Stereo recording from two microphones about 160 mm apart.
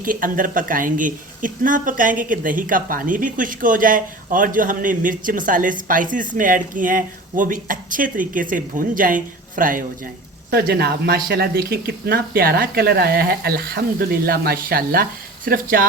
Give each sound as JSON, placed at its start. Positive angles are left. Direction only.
{"t": 0.0, "sound": "speech", "side_deg": -60}
{"t": 10.5, "sound": "speech", "side_deg": -75}